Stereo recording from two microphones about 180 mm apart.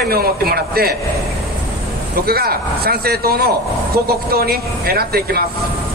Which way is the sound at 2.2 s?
60° right (ahead or behind).